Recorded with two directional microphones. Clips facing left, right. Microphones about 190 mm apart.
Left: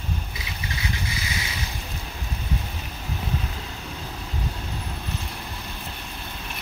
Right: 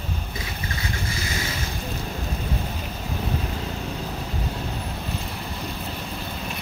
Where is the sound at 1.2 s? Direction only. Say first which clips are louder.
Right 3 dB; 45° right (ahead or behind).